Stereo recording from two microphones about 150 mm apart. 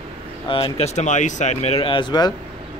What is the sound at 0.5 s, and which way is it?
Speech, 40° left (ahead or behind).